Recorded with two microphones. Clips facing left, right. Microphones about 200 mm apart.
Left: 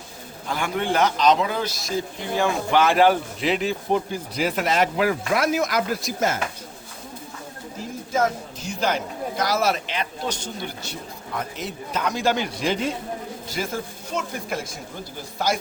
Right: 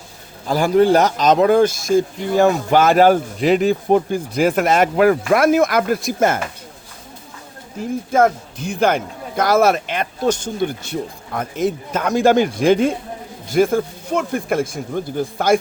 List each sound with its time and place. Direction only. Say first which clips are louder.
0.4 s a man's voice: right 11 dB; 35° right (ahead or behind); by 6.4 s 55° right (ahead or behind)
8.1 s a man's voice: right 7 dB; 55° right (ahead or behind)